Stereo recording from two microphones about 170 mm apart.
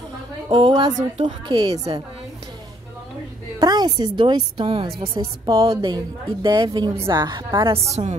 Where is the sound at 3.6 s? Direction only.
25° right (ahead or behind).